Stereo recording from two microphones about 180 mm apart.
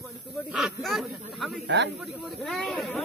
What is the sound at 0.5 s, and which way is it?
Speech, centre (ahead or behind).